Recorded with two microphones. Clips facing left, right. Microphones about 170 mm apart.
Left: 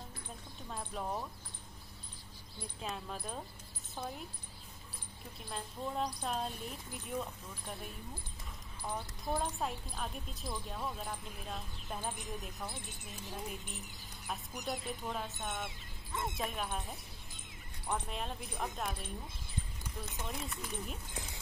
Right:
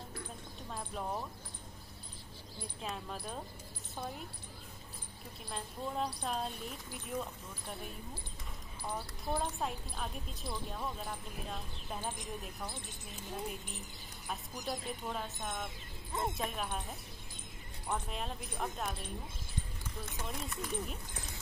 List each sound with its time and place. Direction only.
0.7 s speech: centre (ahead or behind)
2.8 s speech: centre (ahead or behind)
5.5 s a woman's voice: centre (ahead or behind)
16.1 s speech: 35° right (ahead or behind)
16.3 s speech: centre (ahead or behind)
20.2 s speech: centre (ahead or behind)